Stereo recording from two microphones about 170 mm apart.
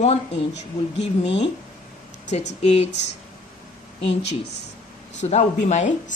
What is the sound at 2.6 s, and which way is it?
Speech, 40° left (ahead or behind).